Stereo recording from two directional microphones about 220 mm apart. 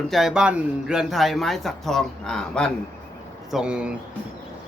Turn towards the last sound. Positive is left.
turn(degrees=-5)  # may be behind; listen again after turning